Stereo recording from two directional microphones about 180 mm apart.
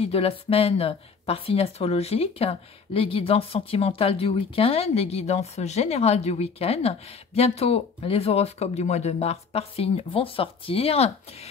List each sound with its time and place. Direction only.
0.0 s speech: 35° left (ahead or behind)